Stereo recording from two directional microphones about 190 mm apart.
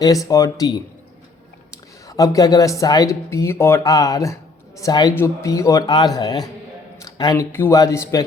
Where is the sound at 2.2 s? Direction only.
20° left (ahead or behind).